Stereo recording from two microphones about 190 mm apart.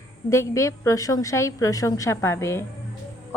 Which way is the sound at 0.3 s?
15° left (ahead or behind).